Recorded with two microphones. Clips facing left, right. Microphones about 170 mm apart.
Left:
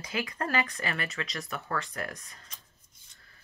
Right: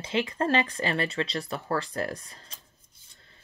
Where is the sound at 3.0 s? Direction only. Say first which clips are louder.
Right 3 dB; 25° right (ahead or behind).